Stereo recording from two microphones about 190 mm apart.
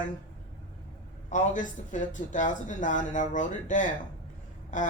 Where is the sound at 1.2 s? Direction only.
40° left (ahead or behind).